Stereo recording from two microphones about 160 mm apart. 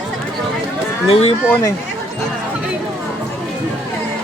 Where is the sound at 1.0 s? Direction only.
40° left (ahead or behind).